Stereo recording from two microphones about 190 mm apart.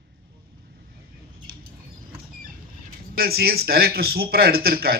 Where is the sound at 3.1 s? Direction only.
55° right (ahead or behind).